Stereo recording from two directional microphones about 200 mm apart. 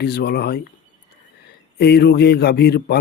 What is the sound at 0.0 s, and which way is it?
Speech, 55° left (ahead or behind).